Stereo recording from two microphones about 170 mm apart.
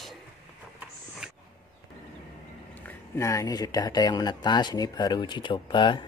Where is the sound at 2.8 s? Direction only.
15° left (ahead or behind).